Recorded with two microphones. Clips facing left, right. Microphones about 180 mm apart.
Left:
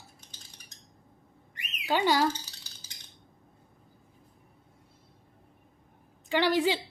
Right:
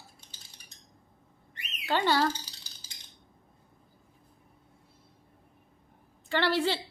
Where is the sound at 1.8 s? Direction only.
10° left (ahead or behind).